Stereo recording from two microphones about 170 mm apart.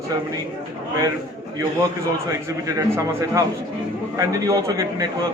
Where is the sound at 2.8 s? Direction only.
20° right (ahead or behind).